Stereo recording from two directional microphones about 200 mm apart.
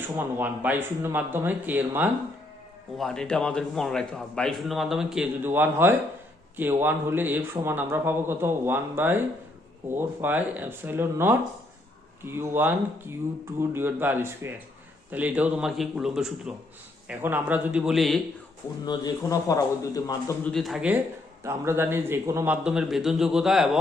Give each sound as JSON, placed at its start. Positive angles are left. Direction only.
{"t": 0.2, "sound": "a man's voice", "side_deg": -10}
{"t": 3.0, "sound": "a man's voice", "side_deg": 5}
{"t": 18.9, "sound": "a man's voice", "side_deg": 20}
{"t": 20.4, "sound": "a man's voice", "side_deg": 0}